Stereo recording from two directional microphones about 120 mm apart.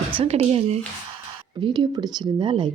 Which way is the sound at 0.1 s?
55° right (ahead or behind).